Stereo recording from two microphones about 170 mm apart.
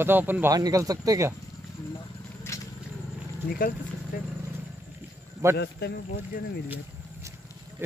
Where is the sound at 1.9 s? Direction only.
20° left (ahead or behind).